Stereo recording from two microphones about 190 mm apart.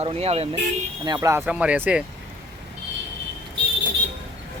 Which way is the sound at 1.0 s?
20° right (ahead or behind).